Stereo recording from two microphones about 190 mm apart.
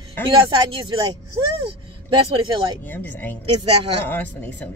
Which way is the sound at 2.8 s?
10° left (ahead or behind).